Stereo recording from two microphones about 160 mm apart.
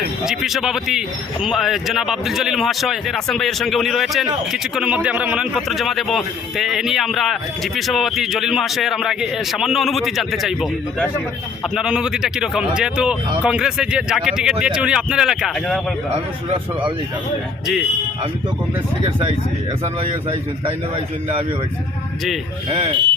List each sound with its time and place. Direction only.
0.3 s a man's voice: centre (ahead or behind)
11.7 s a man's voice: 5° right (ahead or behind)
22.7 s speech: 30° right (ahead or behind)